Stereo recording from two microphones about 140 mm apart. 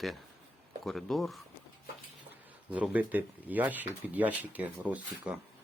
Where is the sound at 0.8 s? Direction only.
Centre (ahead or behind).